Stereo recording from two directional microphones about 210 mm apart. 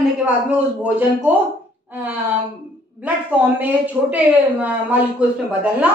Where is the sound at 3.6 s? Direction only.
10° right (ahead or behind).